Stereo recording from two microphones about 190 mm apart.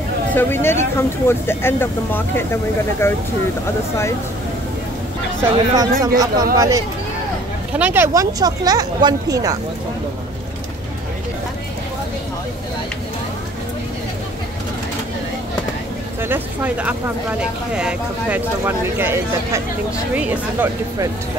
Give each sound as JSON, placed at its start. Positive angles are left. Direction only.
{"t": 0.3, "sound": "speech", "side_deg": 10}
{"t": 5.4, "sound": "speech", "side_deg": -20}
{"t": 16.2, "sound": "speech", "side_deg": -10}